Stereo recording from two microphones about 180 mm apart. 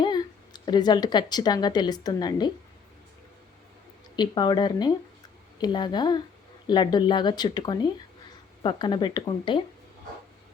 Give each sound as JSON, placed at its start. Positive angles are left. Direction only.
{"t": 0.0, "sound": "speech", "side_deg": 25}
{"t": 4.1, "sound": "speech", "side_deg": 25}